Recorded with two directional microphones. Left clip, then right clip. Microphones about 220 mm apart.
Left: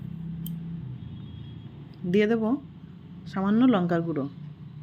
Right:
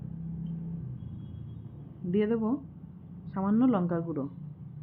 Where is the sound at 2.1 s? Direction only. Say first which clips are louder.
Left 5 dB; 20° left (ahead or behind).